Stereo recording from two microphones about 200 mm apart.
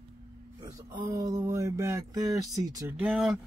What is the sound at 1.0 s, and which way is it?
Speech, 15° right (ahead or behind).